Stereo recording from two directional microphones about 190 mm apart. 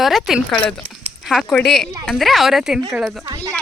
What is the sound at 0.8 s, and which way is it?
Speech, 30° right (ahead or behind).